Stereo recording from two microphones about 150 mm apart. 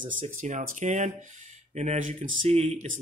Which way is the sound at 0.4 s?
55° right (ahead or behind).